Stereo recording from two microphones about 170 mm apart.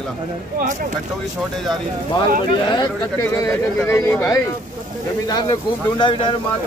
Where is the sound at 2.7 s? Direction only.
20° left (ahead or behind).